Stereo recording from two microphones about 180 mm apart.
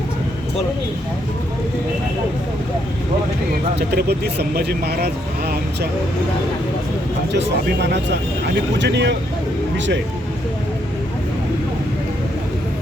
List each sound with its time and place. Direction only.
3.8 s speech: 65° right (ahead or behind)
7.3 s speech: 70° right (ahead or behind)
9.7 s speech: 90° right